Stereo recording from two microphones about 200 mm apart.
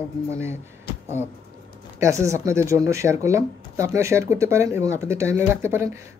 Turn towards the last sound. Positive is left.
turn(degrees=-10)  # may be behind; listen again after turning